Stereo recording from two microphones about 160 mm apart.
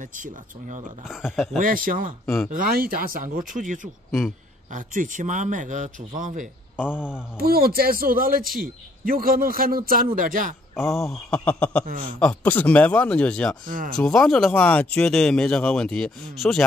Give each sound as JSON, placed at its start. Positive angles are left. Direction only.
{"t": 0.0, "sound": "a man's voice", "side_deg": -55}
{"t": 1.0, "sound": "speech", "side_deg": 0}
{"t": 1.6, "sound": "a man's voice", "side_deg": -60}
{"t": 2.2, "sound": "speech", "side_deg": 5}
{"t": 2.5, "sound": "a man's voice", "side_deg": -65}
{"t": 6.8, "sound": "speech", "side_deg": -5}
{"t": 7.3, "sound": "a man's voice", "side_deg": -70}
{"t": 10.8, "sound": "speech", "side_deg": 0}
{"t": 13.7, "sound": "a man's voice", "side_deg": -60}
{"t": 13.9, "sound": "speech", "side_deg": 5}